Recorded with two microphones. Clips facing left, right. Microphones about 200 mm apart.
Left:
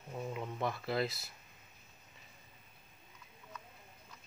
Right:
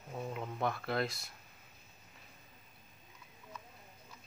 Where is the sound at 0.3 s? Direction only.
Centre (ahead or behind).